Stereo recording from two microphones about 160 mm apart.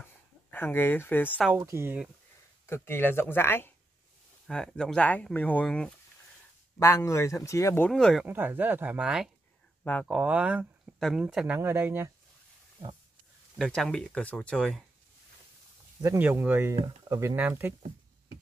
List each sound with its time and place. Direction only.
0.5 s speech: 15° left (ahead or behind)
1.5 s speech: 15° right (ahead or behind)
2.6 s speech: 15° left (ahead or behind)
6.8 s speech: 20° left (ahead or behind)
7.9 s speech: centre (ahead or behind)
8.3 s speech: 10° right (ahead or behind)
13.6 s speech: centre (ahead or behind)
16.0 s speech: 15° right (ahead or behind)
16.7 s speech: 25° right (ahead or behind)
17.4 s speech: 10° right (ahead or behind)